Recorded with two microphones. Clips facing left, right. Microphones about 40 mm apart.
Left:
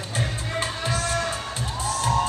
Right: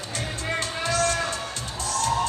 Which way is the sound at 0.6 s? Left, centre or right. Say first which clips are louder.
Right 2 dB; centre.